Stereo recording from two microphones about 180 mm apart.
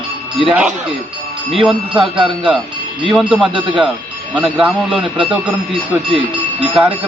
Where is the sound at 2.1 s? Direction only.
25° right (ahead or behind).